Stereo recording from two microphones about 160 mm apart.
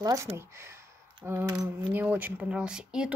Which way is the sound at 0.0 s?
20° right (ahead or behind).